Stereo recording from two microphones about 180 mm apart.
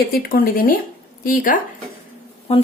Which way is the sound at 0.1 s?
55° left (ahead or behind).